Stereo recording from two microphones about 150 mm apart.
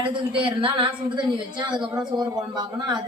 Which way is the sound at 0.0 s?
35° right (ahead or behind).